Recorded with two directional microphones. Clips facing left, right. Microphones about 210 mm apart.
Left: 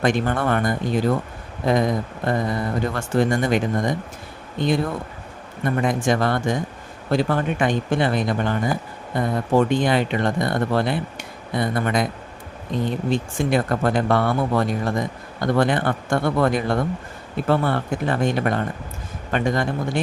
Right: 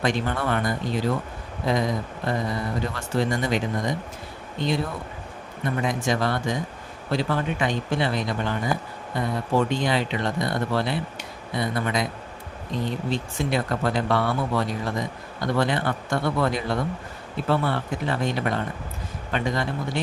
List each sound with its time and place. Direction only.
0.0 s speech: 50° left (ahead or behind)
5.6 s speech: 50° left (ahead or behind)